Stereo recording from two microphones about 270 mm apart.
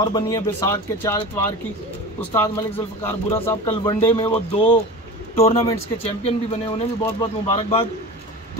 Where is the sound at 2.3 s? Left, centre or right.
Centre.